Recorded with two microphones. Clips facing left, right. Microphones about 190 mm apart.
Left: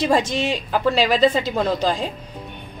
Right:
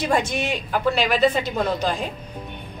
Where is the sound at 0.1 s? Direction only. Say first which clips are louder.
Left 3 dB; 30° left (ahead or behind).